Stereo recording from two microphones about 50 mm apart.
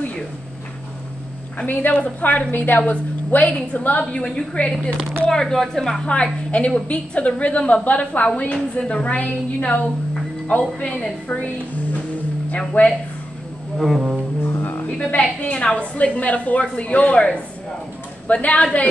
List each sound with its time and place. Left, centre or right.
1.7 s a woman's voice: left
5.3 s speech: centre
6.0 s a woman's voice: left
13.7 s music: centre
14.6 s speech: left
14.9 s a woman's voice: left